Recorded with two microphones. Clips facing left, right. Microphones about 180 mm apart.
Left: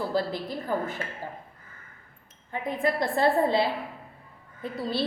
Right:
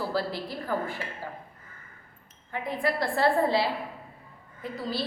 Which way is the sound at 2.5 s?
20° left (ahead or behind).